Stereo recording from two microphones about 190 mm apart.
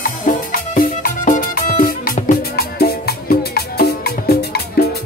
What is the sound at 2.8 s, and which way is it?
Music, 55° left (ahead or behind).